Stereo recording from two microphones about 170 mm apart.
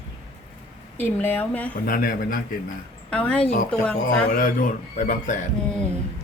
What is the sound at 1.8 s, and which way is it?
Speech, 60° left (ahead or behind).